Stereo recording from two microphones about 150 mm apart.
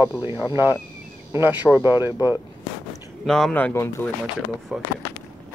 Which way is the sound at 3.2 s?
5° left (ahead or behind).